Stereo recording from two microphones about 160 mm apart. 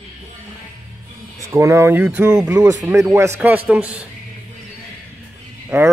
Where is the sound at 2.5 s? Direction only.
20° right (ahead or behind).